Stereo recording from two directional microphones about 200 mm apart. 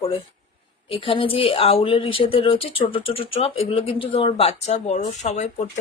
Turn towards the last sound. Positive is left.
turn(degrees=35)  # may be behind; listen again after turning